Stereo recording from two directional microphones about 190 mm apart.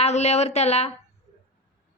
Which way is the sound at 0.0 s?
35° left (ahead or behind).